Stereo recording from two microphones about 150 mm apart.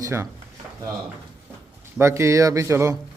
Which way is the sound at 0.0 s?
20° right (ahead or behind).